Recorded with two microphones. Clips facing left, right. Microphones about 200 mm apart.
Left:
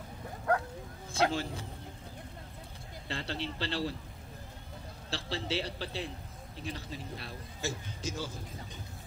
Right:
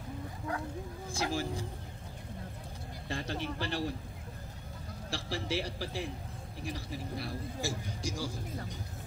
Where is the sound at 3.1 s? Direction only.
65° left (ahead or behind).